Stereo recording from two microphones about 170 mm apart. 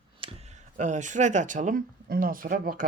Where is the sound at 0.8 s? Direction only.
45° right (ahead or behind).